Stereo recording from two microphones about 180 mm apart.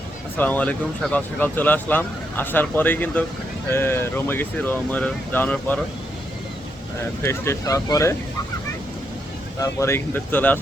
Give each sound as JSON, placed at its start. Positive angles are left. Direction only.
{"t": 0.3, "sound": "speech", "side_deg": 10}
{"t": 7.2, "sound": "speech", "side_deg": 15}
{"t": 9.6, "sound": "speech", "side_deg": 15}